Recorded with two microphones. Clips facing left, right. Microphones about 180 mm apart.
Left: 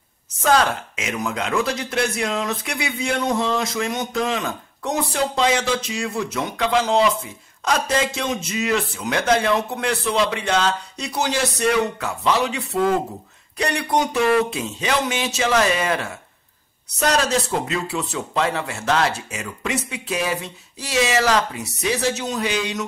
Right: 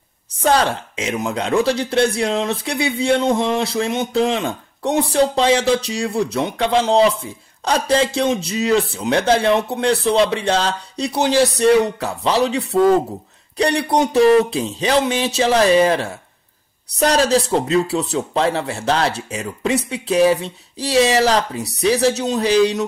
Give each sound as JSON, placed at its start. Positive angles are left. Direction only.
{"t": 0.4, "sound": "speech", "side_deg": -30}